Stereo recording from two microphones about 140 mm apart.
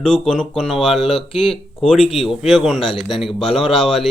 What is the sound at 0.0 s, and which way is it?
Speech, 5° left (ahead or behind).